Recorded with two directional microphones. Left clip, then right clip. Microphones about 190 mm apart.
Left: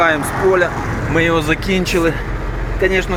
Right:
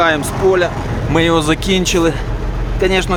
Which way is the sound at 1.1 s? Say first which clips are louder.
Right 2 dB; 15° right (ahead or behind).